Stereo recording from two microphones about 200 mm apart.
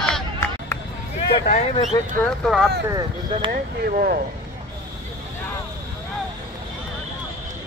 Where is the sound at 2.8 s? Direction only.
20° right (ahead or behind).